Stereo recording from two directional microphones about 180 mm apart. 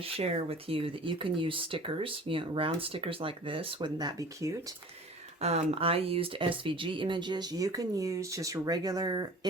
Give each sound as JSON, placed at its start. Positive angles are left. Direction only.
{"t": 0.0, "sound": "speech", "side_deg": -35}
{"t": 5.4, "sound": "speech", "side_deg": -35}